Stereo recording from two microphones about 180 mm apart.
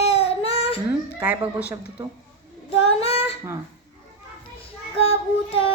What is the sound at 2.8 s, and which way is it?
Child singing, 35° left (ahead or behind).